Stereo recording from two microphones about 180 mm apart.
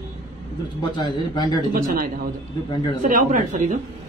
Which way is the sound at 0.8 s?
25° left (ahead or behind).